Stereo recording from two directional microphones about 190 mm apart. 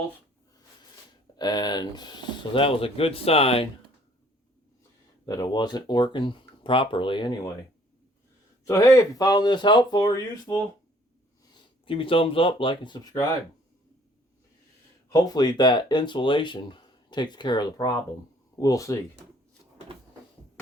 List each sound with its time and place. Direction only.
1.4 s speech: 20° left (ahead or behind)
5.2 s speech: 20° left (ahead or behind)
8.6 s speech: 20° left (ahead or behind)
15.1 s speech: 20° left (ahead or behind)